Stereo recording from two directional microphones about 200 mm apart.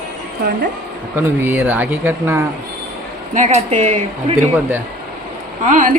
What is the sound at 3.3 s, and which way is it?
Speech, 35° right (ahead or behind).